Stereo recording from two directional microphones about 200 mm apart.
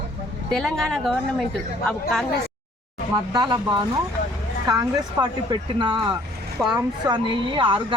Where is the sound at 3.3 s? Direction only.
20° right (ahead or behind).